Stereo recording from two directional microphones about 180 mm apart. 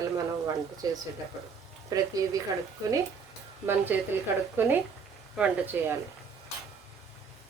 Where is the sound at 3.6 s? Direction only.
10° right (ahead or behind).